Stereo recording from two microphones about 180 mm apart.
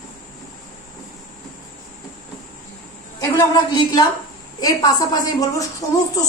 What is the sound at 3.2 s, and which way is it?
A woman's voice, 20° left (ahead or behind).